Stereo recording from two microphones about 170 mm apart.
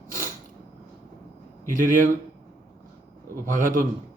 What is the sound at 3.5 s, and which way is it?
Speech, 55° right (ahead or behind).